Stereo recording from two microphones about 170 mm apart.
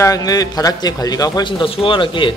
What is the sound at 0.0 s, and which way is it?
Speech, 20° left (ahead or behind).